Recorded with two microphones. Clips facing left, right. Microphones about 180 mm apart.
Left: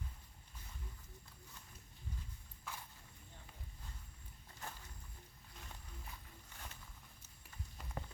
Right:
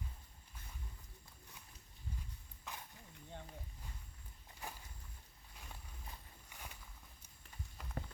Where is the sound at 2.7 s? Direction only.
20° right (ahead or behind).